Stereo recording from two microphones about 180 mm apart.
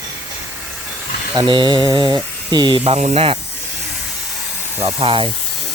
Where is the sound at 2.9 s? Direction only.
35° right (ahead or behind).